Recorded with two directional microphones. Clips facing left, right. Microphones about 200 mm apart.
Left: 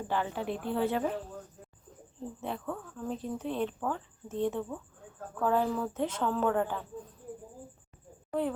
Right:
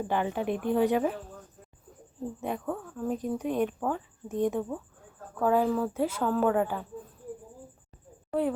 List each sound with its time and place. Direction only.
0.1 s speech: 15° right (ahead or behind)
2.4 s speech: 15° right (ahead or behind)
8.3 s speech: 10° right (ahead or behind)